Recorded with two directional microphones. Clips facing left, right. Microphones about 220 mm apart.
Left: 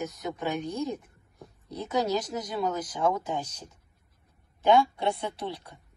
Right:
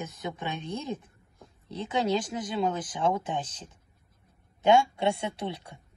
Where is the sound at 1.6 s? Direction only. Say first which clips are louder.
Even; 25° right (ahead or behind).